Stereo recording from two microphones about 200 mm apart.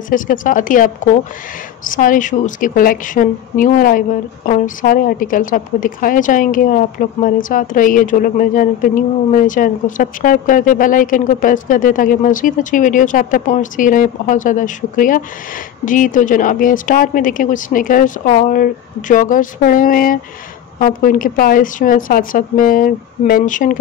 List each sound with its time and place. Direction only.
0.1 s a woman's voice: 40° left (ahead or behind)